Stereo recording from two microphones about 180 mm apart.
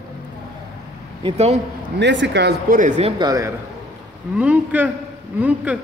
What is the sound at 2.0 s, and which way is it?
Speech, 80° right.